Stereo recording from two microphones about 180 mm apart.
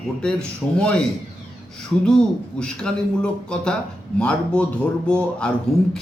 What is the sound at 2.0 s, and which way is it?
A man's voice, 5° left (ahead or behind).